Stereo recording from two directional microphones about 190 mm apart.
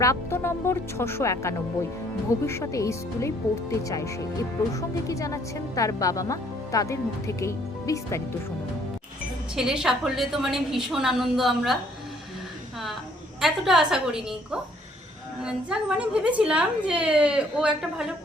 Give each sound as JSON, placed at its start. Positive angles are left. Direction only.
{"t": 0.0, "sound": "speech", "side_deg": 15}
{"t": 9.6, "sound": "a woman's voice", "side_deg": -5}
{"t": 13.4, "sound": "a woman's voice", "side_deg": 0}